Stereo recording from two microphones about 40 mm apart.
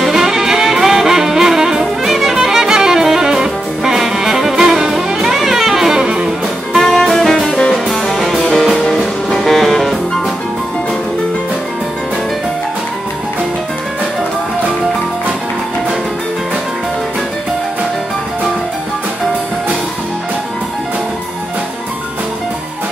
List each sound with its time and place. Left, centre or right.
0.0 s music: centre
6.0 s music: right
6.8 s music: centre
7.7 s music: centre